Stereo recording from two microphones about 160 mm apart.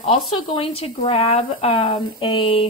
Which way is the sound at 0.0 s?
35° left (ahead or behind).